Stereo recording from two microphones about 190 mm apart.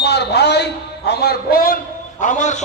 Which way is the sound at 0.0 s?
60° left (ahead or behind).